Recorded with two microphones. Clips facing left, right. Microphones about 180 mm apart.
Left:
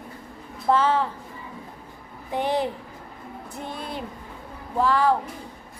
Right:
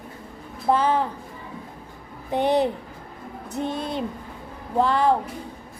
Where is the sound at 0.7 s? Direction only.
15° right (ahead or behind).